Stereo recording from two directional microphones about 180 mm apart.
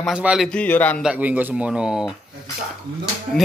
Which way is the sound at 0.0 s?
5° right (ahead or behind).